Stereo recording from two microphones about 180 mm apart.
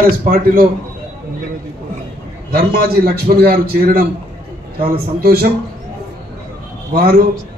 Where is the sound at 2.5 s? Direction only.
60° right (ahead or behind).